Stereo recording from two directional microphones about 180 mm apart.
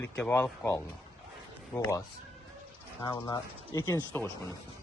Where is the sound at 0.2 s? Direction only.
10° left (ahead or behind).